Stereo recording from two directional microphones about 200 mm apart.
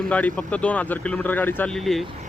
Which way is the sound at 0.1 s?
5° left (ahead or behind).